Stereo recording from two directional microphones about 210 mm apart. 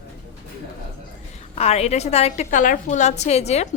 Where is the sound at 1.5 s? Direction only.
30° left (ahead or behind).